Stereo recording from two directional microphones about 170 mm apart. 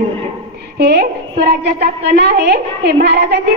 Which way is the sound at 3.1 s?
70° right (ahead or behind).